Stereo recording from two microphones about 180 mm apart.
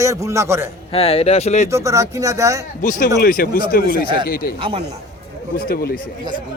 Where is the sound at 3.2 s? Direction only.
55° left (ahead or behind).